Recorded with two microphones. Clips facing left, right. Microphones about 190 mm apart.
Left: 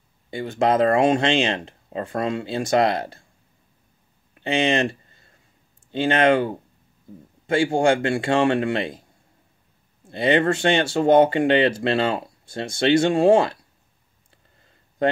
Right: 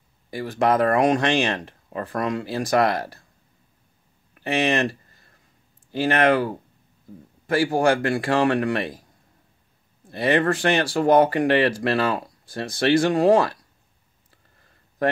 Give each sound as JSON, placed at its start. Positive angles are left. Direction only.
{"t": 0.3, "sound": "speech", "side_deg": 25}
{"t": 4.3, "sound": "a sound", "side_deg": 25}
{"t": 5.9, "sound": "speech", "side_deg": 25}
{"t": 10.0, "sound": "speech", "side_deg": 25}